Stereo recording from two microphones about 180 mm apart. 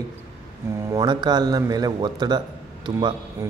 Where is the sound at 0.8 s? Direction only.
25° right (ahead or behind).